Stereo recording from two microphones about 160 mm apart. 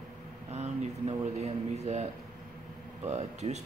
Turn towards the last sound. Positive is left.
turn(degrees=-45)  # may be behind; listen again after turning